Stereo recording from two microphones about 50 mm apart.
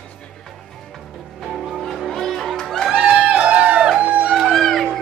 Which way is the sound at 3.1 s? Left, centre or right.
Centre.